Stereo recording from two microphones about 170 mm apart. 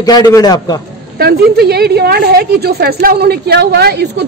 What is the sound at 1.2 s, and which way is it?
A woman's voice, 70° right (ahead or behind).